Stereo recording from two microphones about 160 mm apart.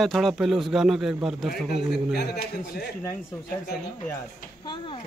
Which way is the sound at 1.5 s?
90° left.